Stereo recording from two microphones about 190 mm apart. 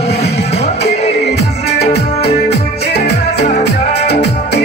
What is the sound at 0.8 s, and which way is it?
Music, 35° left (ahead or behind).